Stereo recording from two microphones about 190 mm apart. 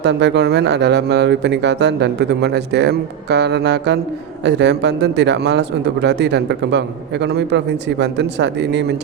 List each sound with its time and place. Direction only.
0.0 s speech: 65° right (ahead or behind)